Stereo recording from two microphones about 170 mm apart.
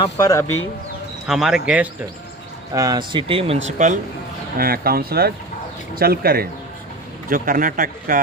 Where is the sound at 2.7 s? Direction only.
20° right (ahead or behind).